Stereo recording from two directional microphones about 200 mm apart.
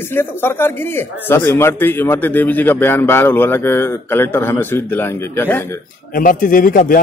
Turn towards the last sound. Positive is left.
turn(degrees=45)  # may be behind; listen again after turning